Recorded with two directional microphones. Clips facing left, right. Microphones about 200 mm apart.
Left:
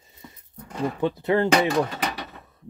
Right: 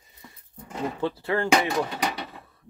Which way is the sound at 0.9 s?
20° left (ahead or behind).